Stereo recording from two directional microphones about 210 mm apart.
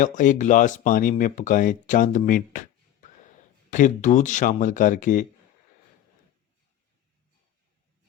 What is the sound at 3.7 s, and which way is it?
Speech, 35° left (ahead or behind).